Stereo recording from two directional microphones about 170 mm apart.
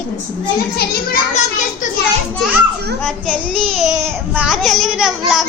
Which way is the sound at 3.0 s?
5° left (ahead or behind).